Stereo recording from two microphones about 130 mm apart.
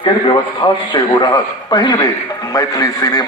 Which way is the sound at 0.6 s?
50° left (ahead or behind).